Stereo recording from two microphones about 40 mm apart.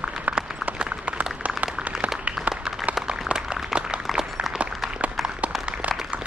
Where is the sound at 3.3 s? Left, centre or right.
Right.